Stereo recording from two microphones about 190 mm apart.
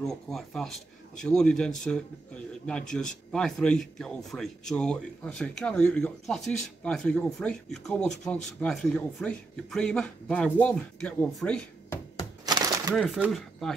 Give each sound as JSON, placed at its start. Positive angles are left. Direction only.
{"t": 0.0, "sound": "speech", "side_deg": 0}
{"t": 3.3, "sound": "speech", "side_deg": 5}
{"t": 12.4, "sound": "a sound", "side_deg": -20}
{"t": 12.9, "sound": "speech", "side_deg": 0}